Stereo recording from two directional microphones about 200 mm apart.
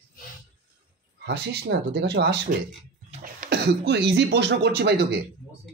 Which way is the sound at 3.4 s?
55° right (ahead or behind).